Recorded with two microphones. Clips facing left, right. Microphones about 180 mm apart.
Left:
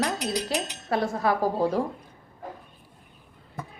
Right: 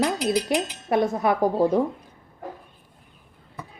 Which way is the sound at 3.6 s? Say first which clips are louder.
Left 2 dB; 50° left (ahead or behind).